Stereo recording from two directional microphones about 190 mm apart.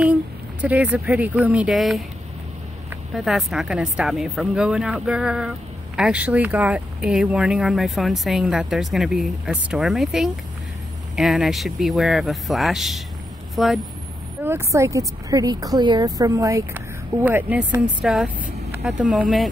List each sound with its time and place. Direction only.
0.0 s speech: 5° right (ahead or behind)
14.4 s speech: 15° right (ahead or behind)